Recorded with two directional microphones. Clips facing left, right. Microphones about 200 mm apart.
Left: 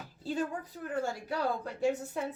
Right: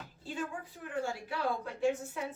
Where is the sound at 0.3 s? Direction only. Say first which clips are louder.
Left 5 dB; 40° left (ahead or behind).